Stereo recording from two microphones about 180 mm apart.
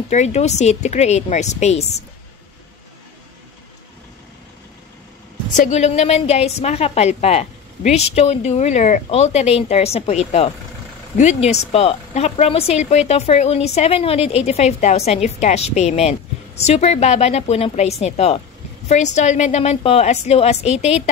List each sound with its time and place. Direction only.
0.1 s a woman's voice: 40° left (ahead or behind)
5.5 s a woman's voice: 40° left (ahead or behind)